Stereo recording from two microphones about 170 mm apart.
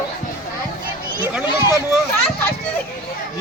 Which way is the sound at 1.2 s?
10° right (ahead or behind).